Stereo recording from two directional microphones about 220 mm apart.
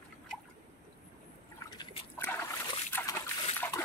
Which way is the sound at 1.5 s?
15° left (ahead or behind).